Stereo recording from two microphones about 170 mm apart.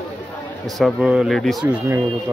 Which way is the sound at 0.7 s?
Centre (ahead or behind).